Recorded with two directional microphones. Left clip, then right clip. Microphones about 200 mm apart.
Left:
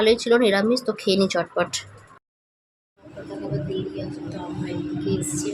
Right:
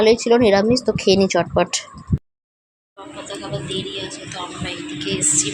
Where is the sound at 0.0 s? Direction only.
15° right (ahead or behind).